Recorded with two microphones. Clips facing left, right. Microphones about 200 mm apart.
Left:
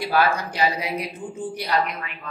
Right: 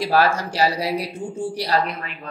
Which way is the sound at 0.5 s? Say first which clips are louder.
Right 3 dB; 35° right (ahead or behind).